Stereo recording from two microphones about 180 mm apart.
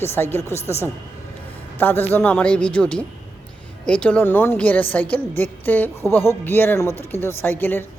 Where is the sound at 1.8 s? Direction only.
10° left (ahead or behind).